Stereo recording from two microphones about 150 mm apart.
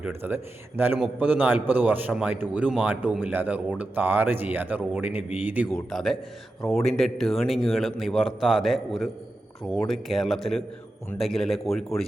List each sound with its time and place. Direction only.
0.0 s a man's voice: 15° right (ahead or behind)
5.7 s a man's voice: centre (ahead or behind)